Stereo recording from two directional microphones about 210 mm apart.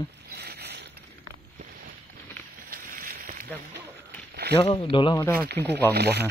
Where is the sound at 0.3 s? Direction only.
50° right (ahead or behind).